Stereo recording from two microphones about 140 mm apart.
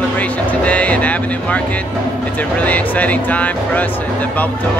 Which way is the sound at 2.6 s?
10° left (ahead or behind).